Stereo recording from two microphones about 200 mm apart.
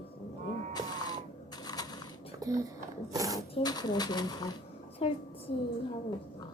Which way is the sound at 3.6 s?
20° left (ahead or behind).